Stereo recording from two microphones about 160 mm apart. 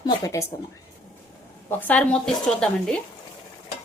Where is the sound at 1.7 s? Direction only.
10° left (ahead or behind).